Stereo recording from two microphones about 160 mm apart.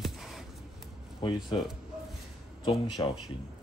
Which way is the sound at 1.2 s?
30° left (ahead or behind).